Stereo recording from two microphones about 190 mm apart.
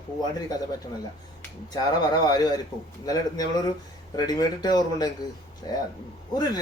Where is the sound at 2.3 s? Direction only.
20° left (ahead or behind).